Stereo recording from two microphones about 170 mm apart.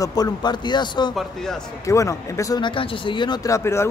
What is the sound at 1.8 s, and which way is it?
Speech, 20° left (ahead or behind).